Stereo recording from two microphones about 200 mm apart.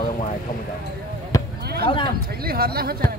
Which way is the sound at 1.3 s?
15° left (ahead or behind).